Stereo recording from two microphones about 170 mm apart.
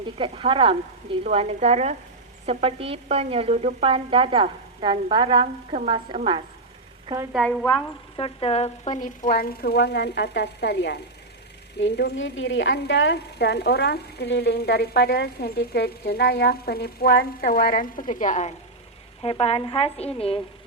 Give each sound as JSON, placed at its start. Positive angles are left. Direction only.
{"t": 0.0, "sound": "a woman's voice", "side_deg": -30}
{"t": 7.3, "sound": "speech", "side_deg": 5}
{"t": 7.7, "sound": "a woman's voice", "side_deg": 30}
{"t": 19.2, "sound": "a woman's voice", "side_deg": 35}